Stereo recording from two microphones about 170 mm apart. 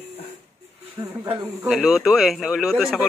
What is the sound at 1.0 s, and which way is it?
Speech, 20° right (ahead or behind).